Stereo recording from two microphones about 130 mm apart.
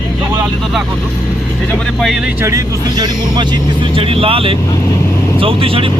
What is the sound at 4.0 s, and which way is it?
Speech, 45° right (ahead or behind).